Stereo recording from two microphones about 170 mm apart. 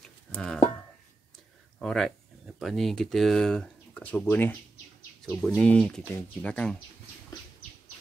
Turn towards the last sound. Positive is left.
turn(degrees=5)  # may be behind; listen again after turning